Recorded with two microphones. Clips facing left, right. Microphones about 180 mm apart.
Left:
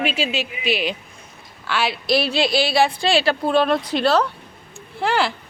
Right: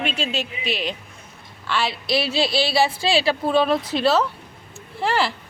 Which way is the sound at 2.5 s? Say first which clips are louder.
Left 2 dB; 30° right (ahead or behind).